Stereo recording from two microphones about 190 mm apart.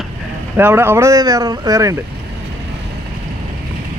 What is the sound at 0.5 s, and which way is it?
Speech, 10° right (ahead or behind).